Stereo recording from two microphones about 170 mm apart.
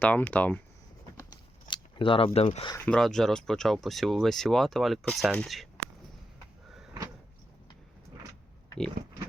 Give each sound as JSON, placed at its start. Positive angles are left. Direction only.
{"t": 0.0, "sound": "speech", "side_deg": 10}
{"t": 1.6, "sound": "speech", "side_deg": 30}
{"t": 2.7, "sound": "speech", "side_deg": 5}